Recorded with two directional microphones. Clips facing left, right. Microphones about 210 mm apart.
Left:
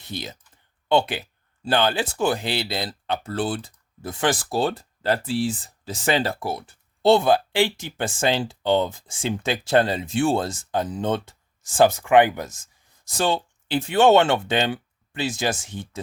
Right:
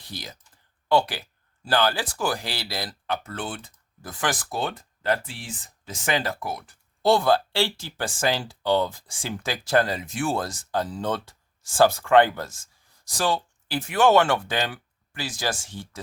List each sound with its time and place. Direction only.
0.0 s speech: 25° left (ahead or behind)